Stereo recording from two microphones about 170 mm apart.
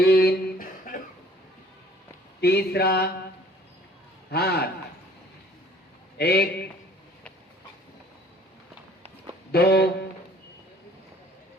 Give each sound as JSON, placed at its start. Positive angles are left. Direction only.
{"t": 0.0, "sound": "a sound", "side_deg": 70}
{"t": 2.4, "sound": "speech", "side_deg": 70}
{"t": 4.3, "sound": "speech", "side_deg": 70}
{"t": 6.1, "sound": "speech", "side_deg": 70}
{"t": 9.5, "sound": "speech", "side_deg": 70}